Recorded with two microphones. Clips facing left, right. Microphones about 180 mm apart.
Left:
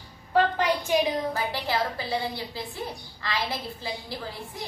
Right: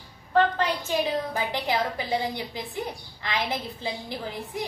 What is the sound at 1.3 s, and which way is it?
A woman's voice, 15° right (ahead or behind).